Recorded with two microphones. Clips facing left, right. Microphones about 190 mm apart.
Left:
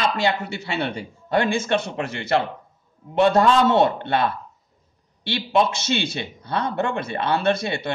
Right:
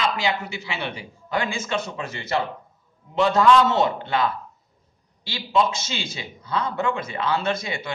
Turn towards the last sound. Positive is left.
turn(degrees=65)  # may be behind; listen again after turning